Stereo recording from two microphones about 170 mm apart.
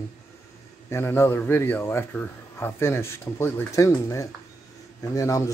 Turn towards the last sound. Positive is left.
turn(degrees=20)  # may be behind; listen again after turning